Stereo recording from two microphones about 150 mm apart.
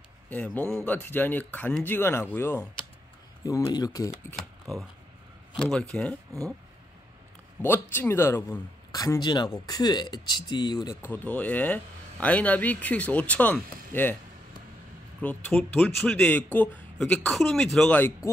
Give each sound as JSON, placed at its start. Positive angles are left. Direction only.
{"t": 0.3, "sound": "speech", "side_deg": 15}
{"t": 5.6, "sound": "speech", "side_deg": 5}
{"t": 7.6, "sound": "speech", "side_deg": 15}
{"t": 11.1, "sound": "speech", "side_deg": 10}
{"t": 15.2, "sound": "speech", "side_deg": 5}